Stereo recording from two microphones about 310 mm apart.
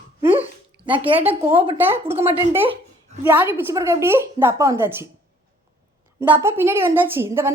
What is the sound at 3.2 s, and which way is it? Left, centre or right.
A woman's voice, centre.